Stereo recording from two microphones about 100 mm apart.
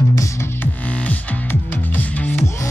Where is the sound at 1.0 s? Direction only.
15° left (ahead or behind).